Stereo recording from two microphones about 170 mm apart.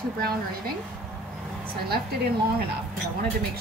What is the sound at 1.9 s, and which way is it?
Speech, 65° right (ahead or behind).